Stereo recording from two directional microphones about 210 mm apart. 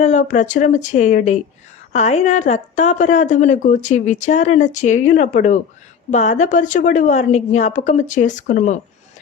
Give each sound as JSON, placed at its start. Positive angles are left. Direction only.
{"t": 0.0, "sound": "a woman's voice", "side_deg": 35}